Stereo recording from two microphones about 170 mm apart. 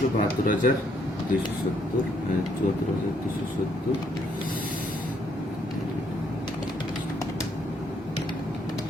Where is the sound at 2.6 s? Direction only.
50° left (ahead or behind).